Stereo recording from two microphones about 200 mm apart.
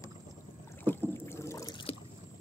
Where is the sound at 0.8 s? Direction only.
10° left (ahead or behind).